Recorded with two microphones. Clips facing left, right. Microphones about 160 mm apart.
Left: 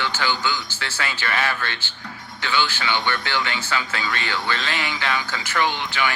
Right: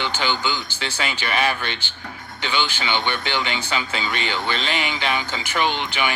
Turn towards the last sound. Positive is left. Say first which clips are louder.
# right 1 dB
turn(degrees=-20)  # may be behind; listen again after turning